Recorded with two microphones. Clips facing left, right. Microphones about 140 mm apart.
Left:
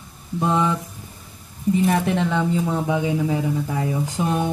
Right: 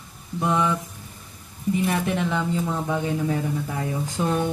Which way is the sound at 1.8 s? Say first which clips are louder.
Left 4 dB; 35° left (ahead or behind).